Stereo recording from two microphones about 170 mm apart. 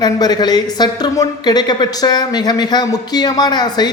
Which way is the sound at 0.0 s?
25° left (ahead or behind).